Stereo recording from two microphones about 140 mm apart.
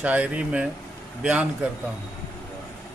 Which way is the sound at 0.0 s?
10° right (ahead or behind).